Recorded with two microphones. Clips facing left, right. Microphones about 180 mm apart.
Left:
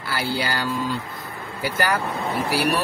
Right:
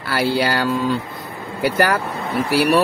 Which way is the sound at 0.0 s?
65° right (ahead or behind).